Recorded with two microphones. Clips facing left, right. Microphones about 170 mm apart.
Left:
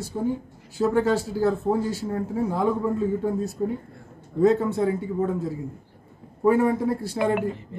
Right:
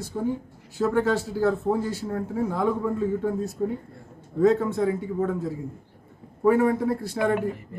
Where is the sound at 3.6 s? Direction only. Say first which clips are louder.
Even; centre (ahead or behind).